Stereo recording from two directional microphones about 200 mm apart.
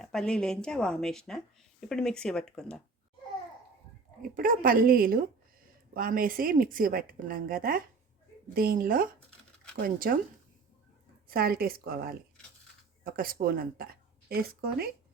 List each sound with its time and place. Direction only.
0.0 s a woman's voice: 5° left (ahead or behind)
4.2 s a woman's voice: 45° right (ahead or behind)
11.3 s a woman's voice: 50° right (ahead or behind)